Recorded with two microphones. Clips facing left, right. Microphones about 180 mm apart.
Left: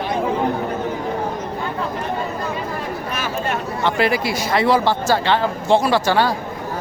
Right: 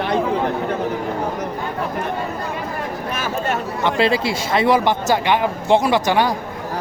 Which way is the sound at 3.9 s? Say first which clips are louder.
Right 1 dB; 25° right (ahead or behind).